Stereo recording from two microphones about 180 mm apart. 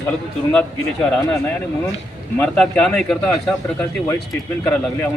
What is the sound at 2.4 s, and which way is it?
Speech, 5° left (ahead or behind).